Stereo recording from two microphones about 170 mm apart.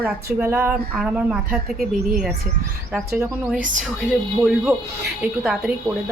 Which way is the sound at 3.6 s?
50° right (ahead or behind).